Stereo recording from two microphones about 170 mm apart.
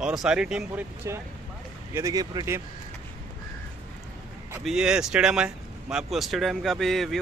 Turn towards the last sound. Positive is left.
turn(degrees=0)  # may be behind; listen again after turning